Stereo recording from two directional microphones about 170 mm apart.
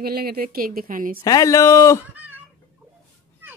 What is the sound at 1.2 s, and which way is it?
Speech, 20° left (ahead or behind).